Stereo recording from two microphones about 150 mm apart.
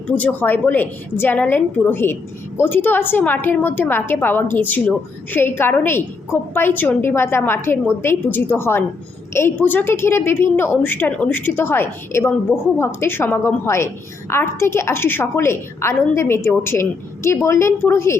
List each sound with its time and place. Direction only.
0.2 s a woman's voice: 10° left (ahead or behind)